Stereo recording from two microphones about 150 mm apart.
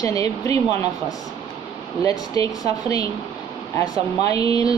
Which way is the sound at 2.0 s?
25° left (ahead or behind).